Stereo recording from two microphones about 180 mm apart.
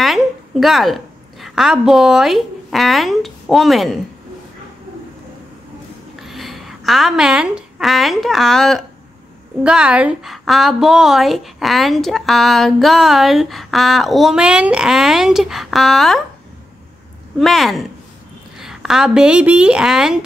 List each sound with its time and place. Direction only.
0.0 s a woman's voice: centre (ahead or behind)
6.1 s a woman's voice: centre (ahead or behind)
17.4 s a woman's voice: centre (ahead or behind)